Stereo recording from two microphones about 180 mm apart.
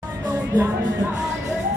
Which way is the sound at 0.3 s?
10° right (ahead or behind).